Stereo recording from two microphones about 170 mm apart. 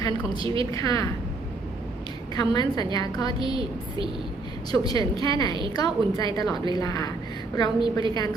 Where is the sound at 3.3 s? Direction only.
30° right (ahead or behind).